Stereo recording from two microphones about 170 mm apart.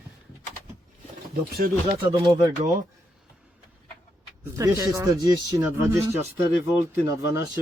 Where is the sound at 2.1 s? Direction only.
25° right (ahead or behind).